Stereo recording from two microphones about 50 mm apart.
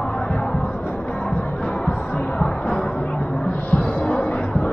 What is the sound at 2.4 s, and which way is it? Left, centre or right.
Music, centre.